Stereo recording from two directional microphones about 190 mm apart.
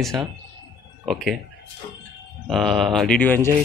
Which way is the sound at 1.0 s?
Centre (ahead or behind).